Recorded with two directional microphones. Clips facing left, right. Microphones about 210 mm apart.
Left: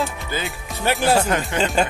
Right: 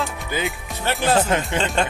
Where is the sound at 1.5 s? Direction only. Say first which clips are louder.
Left 5 dB; 5° left (ahead or behind).